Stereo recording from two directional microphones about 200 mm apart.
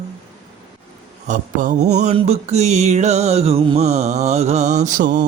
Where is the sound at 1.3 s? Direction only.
40° right (ahead or behind).